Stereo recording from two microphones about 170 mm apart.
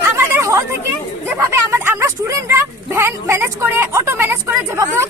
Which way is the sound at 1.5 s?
15° right (ahead or behind).